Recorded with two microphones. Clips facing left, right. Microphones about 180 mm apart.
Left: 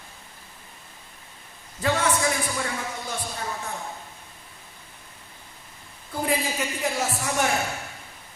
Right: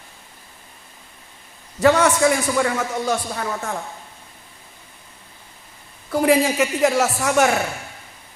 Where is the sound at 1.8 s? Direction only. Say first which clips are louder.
Right 9 dB; 85° right.